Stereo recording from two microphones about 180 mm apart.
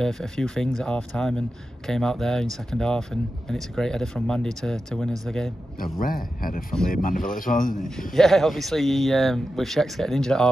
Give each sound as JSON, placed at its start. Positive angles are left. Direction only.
{"t": 0.0, "sound": "speech", "side_deg": 5}
{"t": 5.8, "sound": "speech", "side_deg": 50}
{"t": 8.1, "sound": "speech", "side_deg": 0}